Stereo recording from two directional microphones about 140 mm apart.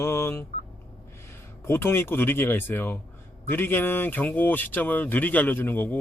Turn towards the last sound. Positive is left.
turn(degrees=15)  # may be behind; listen again after turning